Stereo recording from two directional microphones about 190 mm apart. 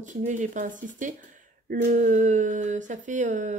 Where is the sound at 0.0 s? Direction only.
40° right (ahead or behind).